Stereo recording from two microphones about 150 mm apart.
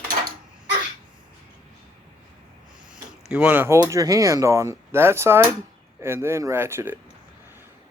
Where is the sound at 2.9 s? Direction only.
10° right (ahead or behind).